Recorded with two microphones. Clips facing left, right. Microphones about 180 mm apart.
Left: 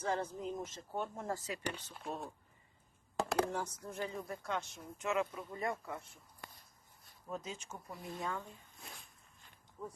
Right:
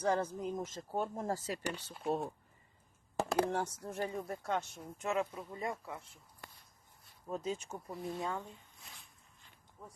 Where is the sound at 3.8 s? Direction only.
50° right (ahead or behind).